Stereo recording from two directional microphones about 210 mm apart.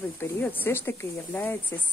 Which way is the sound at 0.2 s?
10° left (ahead or behind).